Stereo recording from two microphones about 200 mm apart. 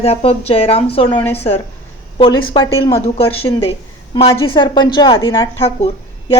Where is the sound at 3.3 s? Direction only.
90° left.